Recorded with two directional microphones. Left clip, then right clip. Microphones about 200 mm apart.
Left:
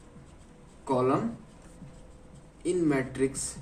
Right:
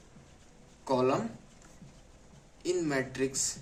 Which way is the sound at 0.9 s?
35° right (ahead or behind).